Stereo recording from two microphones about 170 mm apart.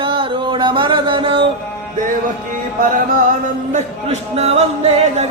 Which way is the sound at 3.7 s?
40° right (ahead or behind).